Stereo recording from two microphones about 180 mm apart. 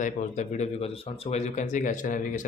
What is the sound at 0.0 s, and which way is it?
Speech, 45° left (ahead or behind).